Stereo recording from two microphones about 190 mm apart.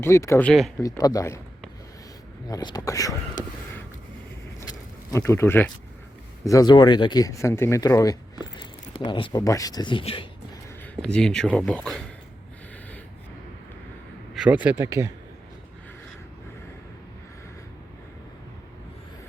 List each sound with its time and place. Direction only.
0.0 s speech: 15° left (ahead or behind)
2.5 s speech: 20° left (ahead or behind)
4.7 s a sound: 15° left (ahead or behind)
6.4 s speech: 20° left (ahead or behind)
11.0 s speech: 5° left (ahead or behind)
14.3 s speech: 5° right (ahead or behind)